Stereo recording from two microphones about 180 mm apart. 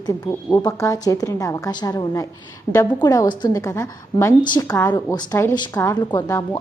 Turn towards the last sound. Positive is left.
turn(degrees=20)  # may be behind; listen again after turning